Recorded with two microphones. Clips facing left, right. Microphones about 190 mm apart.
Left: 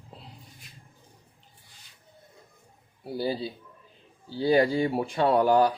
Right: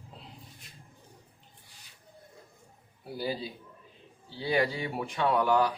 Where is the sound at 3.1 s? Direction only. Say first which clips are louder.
Left 5 dB; 35° left (ahead or behind).